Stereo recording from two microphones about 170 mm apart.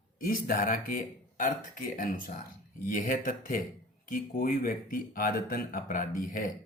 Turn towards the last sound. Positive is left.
turn(degrees=55)  # may be behind; listen again after turning